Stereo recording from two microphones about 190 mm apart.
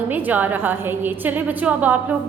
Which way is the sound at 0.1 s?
10° right (ahead or behind).